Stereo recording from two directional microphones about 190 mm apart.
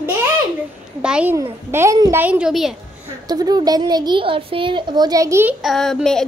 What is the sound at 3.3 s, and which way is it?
Speech, 20° right (ahead or behind).